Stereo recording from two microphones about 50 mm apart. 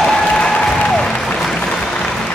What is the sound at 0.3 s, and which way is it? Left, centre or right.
Applause, centre.